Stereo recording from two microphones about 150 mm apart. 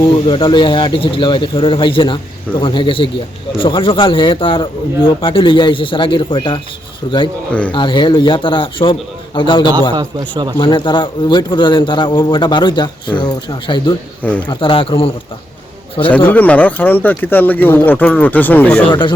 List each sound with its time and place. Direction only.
0.0 s a man's voice: 35° left (ahead or behind)
9.9 s a man's voice: 30° right (ahead or behind)
10.6 s a man's voice: 35° left (ahead or behind)
14.2 s speech: 10° left (ahead or behind)
14.4 s a man's voice: 35° left (ahead or behind)
16.1 s speech: 10° left (ahead or behind)
18.9 s a man's voice: 30° left (ahead or behind)